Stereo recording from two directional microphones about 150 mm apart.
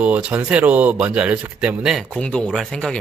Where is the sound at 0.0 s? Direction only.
10° right (ahead or behind).